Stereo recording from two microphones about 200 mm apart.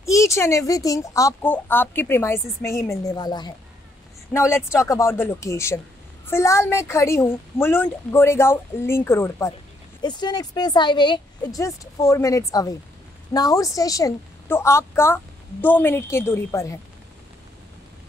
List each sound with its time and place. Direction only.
0.0 s speech: 15° left (ahead or behind)